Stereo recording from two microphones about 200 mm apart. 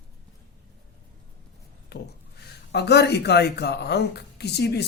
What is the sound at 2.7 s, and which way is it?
Speech, 55° left (ahead or behind).